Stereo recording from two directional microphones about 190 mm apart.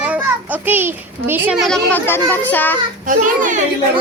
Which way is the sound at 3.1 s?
45° right (ahead or behind).